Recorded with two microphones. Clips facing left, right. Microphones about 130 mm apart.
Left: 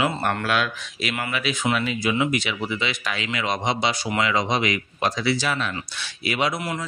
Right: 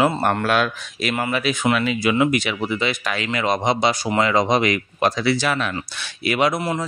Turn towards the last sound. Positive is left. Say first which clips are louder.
# right 5 dB
turn(degrees=-55)  # may be behind; listen again after turning